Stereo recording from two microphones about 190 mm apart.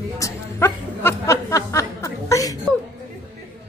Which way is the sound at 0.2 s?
15° left (ahead or behind).